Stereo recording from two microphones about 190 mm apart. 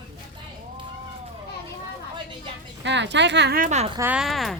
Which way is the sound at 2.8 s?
65° right (ahead or behind).